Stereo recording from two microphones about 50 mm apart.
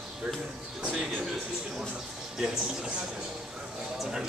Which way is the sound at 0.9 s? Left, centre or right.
Centre.